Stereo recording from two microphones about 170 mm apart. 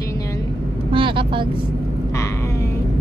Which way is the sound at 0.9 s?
30° right (ahead or behind).